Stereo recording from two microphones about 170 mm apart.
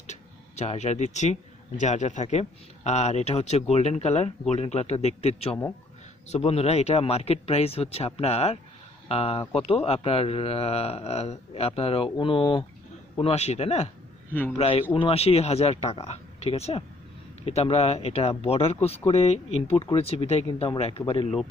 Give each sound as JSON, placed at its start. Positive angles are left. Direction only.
{"t": 0.0, "sound": "speech", "side_deg": 40}
{"t": 13.2, "sound": "speech", "side_deg": 35}